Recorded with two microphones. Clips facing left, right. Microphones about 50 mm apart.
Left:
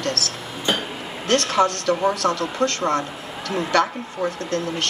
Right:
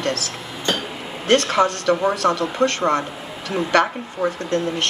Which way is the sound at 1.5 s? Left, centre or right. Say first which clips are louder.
Right 1 dB; right.